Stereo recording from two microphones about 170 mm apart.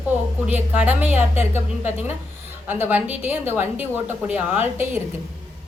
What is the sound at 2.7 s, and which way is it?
A woman's voice, 10° right (ahead or behind).